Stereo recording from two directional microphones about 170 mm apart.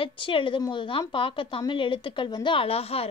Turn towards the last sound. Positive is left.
turn(degrees=35)  # may be behind; listen again after turning